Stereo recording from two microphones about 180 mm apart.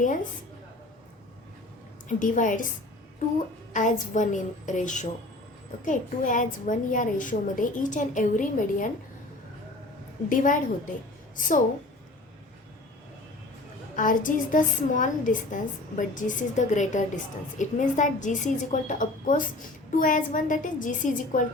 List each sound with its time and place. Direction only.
2.0 s a woman's voice: 45° left (ahead or behind)
3.7 s a woman's voice: 45° left (ahead or behind)
10.2 s a woman's voice: 45° left (ahead or behind)
13.9 s a woman's voice: 45° left (ahead or behind)